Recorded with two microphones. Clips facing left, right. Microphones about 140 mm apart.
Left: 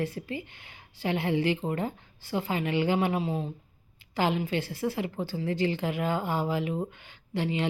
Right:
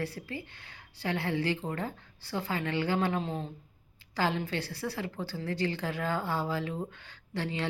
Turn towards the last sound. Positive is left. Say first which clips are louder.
# left 5 dB
turn(degrees=15)  # may be behind; listen again after turning